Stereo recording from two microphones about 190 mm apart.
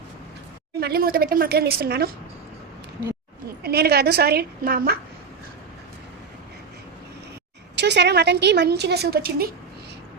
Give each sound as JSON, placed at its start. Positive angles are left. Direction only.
{"t": 0.8, "sound": "a woman's voice", "side_deg": -55}
{"t": 3.6, "sound": "a woman's voice", "side_deg": -60}
{"t": 7.8, "sound": "a woman's voice", "side_deg": -65}